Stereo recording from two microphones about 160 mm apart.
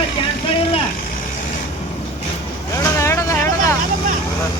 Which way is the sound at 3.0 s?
20° left (ahead or behind).